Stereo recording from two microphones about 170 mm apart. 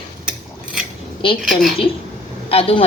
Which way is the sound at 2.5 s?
35° left (ahead or behind).